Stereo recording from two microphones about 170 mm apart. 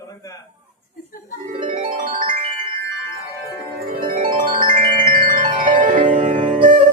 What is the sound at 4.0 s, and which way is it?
Music, 55° right (ahead or behind).